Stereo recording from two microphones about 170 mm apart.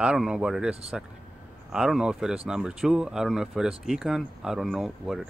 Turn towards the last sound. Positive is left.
turn(degrees=0)  # may be behind; listen again after turning